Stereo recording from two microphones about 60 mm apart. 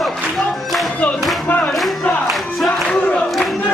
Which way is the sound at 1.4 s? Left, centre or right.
Left.